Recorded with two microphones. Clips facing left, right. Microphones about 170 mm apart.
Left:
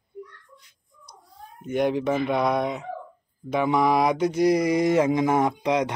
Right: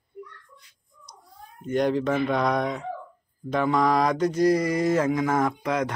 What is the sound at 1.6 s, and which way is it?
Speech, 10° left (ahead or behind).